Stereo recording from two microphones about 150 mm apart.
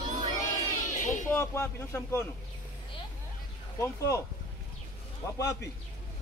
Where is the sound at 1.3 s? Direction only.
15° left (ahead or behind).